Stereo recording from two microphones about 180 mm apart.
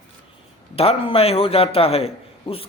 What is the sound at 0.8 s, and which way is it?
Speech, 35° left (ahead or behind).